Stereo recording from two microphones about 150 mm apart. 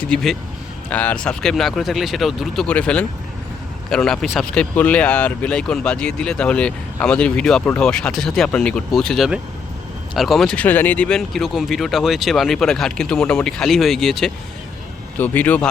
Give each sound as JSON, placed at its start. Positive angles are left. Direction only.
{"t": 0.0, "sound": "speech", "side_deg": 5}
{"t": 15.2, "sound": "speech", "side_deg": 10}